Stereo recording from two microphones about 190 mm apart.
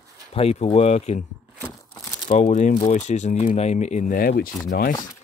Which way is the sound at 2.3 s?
40° left (ahead or behind).